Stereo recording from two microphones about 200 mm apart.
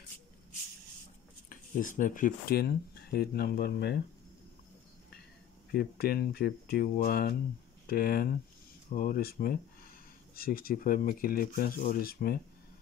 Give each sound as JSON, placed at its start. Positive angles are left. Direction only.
{"t": 1.5, "sound": "speech", "side_deg": 45}
{"t": 5.7, "sound": "speech", "side_deg": 50}